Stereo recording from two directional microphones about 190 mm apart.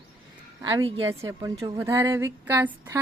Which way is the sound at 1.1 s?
15° right (ahead or behind).